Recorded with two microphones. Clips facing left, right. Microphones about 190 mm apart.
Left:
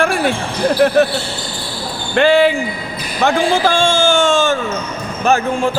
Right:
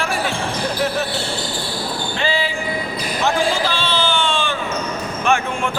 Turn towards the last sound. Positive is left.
turn(degrees=35)  # may be behind; listen again after turning